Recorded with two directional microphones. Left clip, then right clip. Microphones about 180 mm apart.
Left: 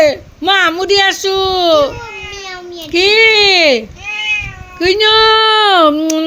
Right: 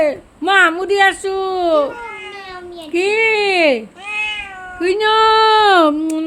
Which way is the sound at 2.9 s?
10° left (ahead or behind).